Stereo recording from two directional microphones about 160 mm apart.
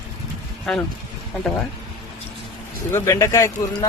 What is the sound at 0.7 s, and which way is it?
Speech, 5° left (ahead or behind).